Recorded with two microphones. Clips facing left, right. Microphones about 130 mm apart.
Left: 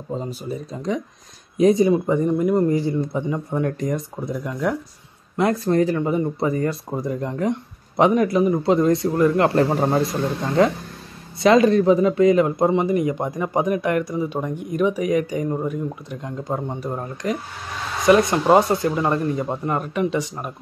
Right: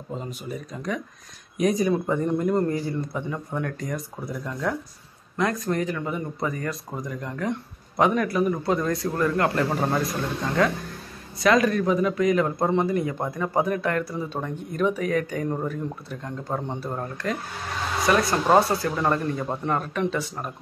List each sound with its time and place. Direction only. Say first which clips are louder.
0.1 s a man's voice: left 5 dB; 30° left (ahead or behind); by 2.6 s 10° left (ahead or behind)
2.7 s speech: left 6 dB; 25° left (ahead or behind)
5.4 s a man's voice: left 6 dB; 30° left (ahead or behind); by 20.5 s 15° left (ahead or behind)